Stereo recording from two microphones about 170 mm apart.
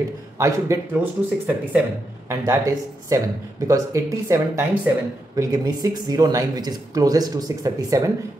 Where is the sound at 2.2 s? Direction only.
20° right (ahead or behind).